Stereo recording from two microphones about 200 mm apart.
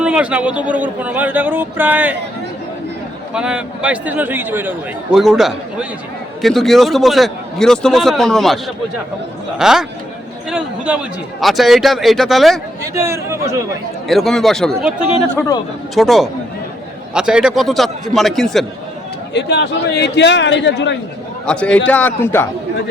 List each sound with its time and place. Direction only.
0.0 s speech: 5° right (ahead or behind)
3.3 s a man's voice: 5° right (ahead or behind)
9.6 s a man's voice: 5° right (ahead or behind)
12.8 s speech: 15° right (ahead or behind)
14.1 s a man's voice: centre (ahead or behind)
19.3 s a man's voice: 60° left (ahead or behind)
21.4 s a man's voice: 5° left (ahead or behind)